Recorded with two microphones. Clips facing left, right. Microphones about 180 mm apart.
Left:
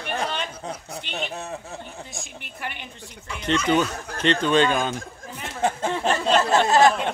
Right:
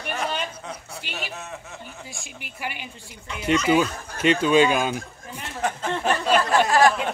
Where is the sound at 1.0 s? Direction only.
5° right (ahead or behind).